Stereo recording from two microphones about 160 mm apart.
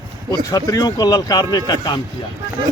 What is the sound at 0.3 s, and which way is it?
Speech, 20° left (ahead or behind).